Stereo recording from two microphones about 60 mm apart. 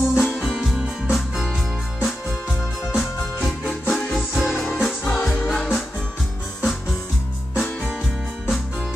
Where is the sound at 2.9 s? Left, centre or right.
Centre.